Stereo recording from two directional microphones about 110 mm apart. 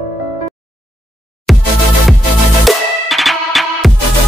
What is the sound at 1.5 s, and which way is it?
Music, centre (ahead or behind).